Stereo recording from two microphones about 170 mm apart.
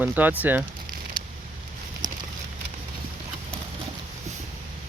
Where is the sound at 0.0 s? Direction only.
10° right (ahead or behind).